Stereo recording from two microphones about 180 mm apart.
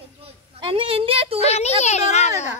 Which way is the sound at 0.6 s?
30° right (ahead or behind).